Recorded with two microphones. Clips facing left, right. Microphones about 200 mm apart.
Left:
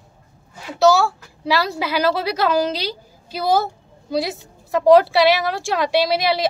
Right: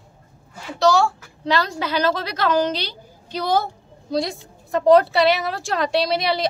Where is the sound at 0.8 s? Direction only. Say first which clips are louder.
Left 2 dB; 5° left (ahead or behind).